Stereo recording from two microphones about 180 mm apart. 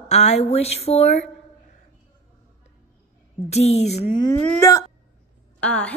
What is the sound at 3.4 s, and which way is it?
Speech, 35° left (ahead or behind).